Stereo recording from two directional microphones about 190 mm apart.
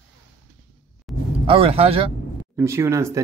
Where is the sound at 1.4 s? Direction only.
30° right (ahead or behind).